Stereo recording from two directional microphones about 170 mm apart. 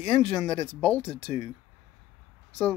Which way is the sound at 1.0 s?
35° left (ahead or behind).